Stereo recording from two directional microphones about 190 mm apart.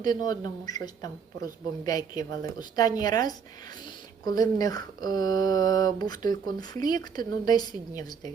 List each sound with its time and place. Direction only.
0.0 s speech: 20° left (ahead or behind)